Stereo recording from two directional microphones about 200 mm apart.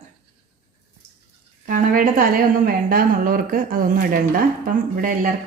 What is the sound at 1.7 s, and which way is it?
A woman's voice, 40° right (ahead or behind).